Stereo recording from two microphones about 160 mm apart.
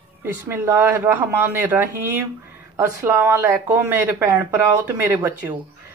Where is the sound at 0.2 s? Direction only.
15° right (ahead or behind).